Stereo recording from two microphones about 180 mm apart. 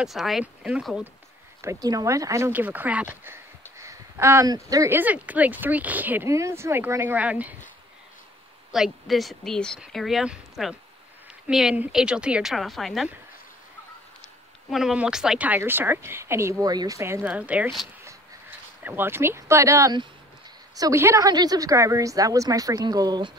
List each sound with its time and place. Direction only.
0.0 s speech: centre (ahead or behind)
1.6 s a woman's voice: 20° right (ahead or behind)
3.7 s a sound: 15° right (ahead or behind)
4.6 s a woman's voice: 15° right (ahead or behind)
8.7 s speech: centre (ahead or behind)
14.7 s a woman's voice: centre (ahead or behind)
18.9 s a woman's voice: 10° right (ahead or behind)